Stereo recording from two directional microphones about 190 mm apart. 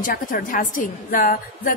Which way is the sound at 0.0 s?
45° left (ahead or behind).